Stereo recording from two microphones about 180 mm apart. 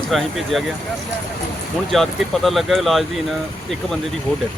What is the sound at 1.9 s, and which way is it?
Speech, centre (ahead or behind).